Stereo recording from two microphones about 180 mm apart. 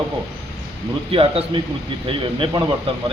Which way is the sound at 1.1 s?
30° right (ahead or behind).